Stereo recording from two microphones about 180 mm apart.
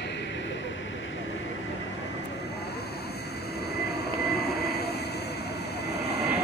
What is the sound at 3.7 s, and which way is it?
Vehicle, 60° left (ahead or behind).